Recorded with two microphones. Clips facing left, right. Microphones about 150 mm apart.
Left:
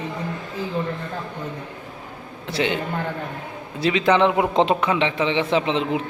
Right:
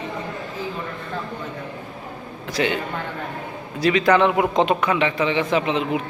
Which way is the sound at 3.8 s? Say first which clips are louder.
Right 1 dB; 20° left (ahead or behind).